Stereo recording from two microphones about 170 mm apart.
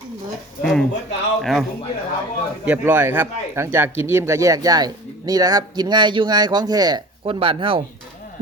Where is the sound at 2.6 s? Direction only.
10° right (ahead or behind).